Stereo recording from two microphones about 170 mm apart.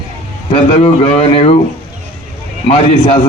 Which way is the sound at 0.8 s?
35° left (ahead or behind).